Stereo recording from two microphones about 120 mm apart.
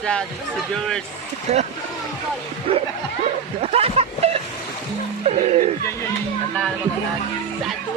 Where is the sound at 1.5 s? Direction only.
60° right (ahead or behind).